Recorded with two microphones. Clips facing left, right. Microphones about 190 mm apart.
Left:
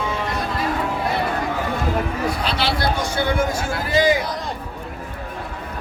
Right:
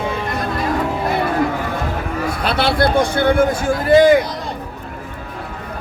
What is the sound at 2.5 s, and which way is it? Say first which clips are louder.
A man's voice: right 10 dB; 55° right (ahead or behind).